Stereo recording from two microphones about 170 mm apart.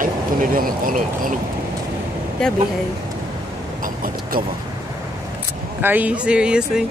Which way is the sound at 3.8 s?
55° right (ahead or behind).